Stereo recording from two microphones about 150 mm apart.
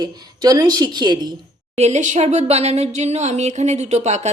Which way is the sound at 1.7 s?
50° right (ahead or behind).